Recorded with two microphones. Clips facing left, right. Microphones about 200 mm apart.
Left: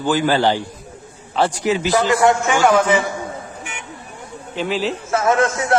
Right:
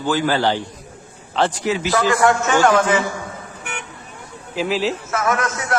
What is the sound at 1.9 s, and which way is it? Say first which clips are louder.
A man's voice: left 1 dB; 20° left (ahead or behind).